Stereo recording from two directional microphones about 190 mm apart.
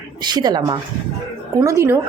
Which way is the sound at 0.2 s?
20° right (ahead or behind).